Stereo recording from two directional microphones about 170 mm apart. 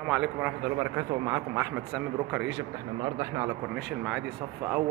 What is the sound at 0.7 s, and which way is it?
Speech, 20° right (ahead or behind).